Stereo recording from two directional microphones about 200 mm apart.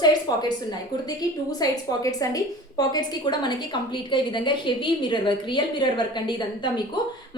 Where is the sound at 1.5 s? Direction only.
20° left (ahead or behind).